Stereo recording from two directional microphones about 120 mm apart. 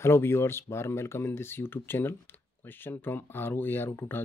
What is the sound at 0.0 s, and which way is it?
Speech, 20° left (ahead or behind).